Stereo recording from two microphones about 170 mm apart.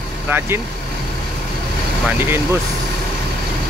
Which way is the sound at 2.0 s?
10° right (ahead or behind).